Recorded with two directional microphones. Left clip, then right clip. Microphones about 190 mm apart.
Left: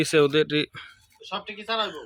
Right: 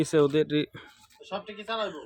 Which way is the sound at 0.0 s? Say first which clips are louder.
Left 3 dB; 15° right (ahead or behind).